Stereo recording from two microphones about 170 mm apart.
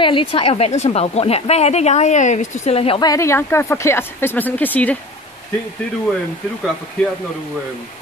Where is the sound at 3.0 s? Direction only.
20° left (ahead or behind).